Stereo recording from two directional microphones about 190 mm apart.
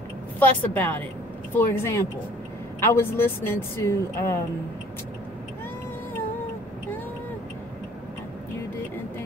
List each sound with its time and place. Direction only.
0.4 s a woman's voice: 10° left (ahead or behind)